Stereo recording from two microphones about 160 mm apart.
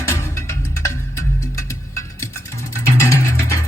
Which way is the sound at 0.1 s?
15° left (ahead or behind).